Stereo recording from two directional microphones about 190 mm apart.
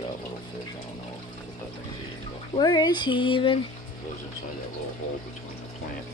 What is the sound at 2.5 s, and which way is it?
Speech, 20° left (ahead or behind).